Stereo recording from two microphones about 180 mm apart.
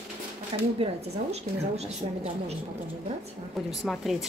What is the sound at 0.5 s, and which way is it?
A woman's voice, 25° right (ahead or behind).